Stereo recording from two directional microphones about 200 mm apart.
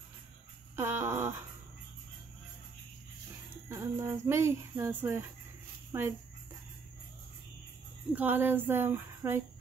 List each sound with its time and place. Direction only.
0.7 s a sound: 10° right (ahead or behind)
3.6 s speech: 15° right (ahead or behind)
8.1 s speech: 10° right (ahead or behind)